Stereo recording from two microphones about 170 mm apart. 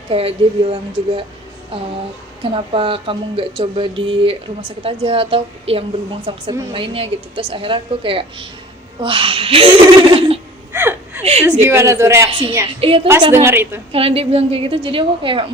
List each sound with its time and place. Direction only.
0.1 s speech: 35° right (ahead or behind)
2.4 s speech: 30° right (ahead or behind)
10.7 s gasp: 10° right (ahead or behind)
11.2 s a woman's voice: 40° right (ahead or behind)
11.6 s a woman's voice: 15° right (ahead or behind)
12.3 s speech: 30° right (ahead or behind)
13.3 s a woman's voice: 15° right (ahead or behind)
13.9 s speech: 35° right (ahead or behind)